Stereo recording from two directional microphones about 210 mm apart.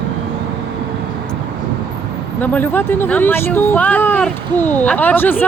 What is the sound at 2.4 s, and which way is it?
Speech, 10° left (ahead or behind).